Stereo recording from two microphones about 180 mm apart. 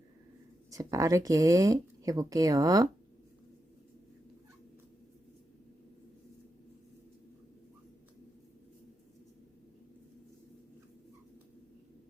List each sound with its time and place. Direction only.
0.7 s speech: 20° right (ahead or behind)